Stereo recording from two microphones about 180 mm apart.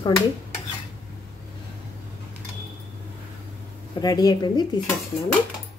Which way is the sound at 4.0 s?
20° left (ahead or behind).